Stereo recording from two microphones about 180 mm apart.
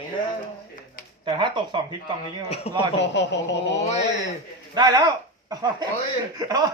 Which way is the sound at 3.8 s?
35° left (ahead or behind).